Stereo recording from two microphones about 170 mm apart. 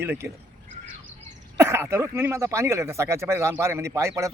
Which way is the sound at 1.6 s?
15° right (ahead or behind).